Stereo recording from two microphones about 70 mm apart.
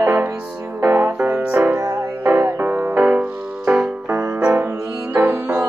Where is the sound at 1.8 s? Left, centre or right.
Right.